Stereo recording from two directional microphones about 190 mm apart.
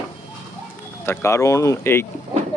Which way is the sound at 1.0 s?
15° left (ahead or behind).